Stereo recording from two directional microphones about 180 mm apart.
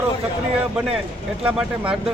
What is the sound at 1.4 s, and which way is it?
Speech, 5° right (ahead or behind).